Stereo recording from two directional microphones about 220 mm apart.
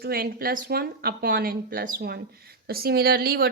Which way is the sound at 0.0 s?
45° right (ahead or behind).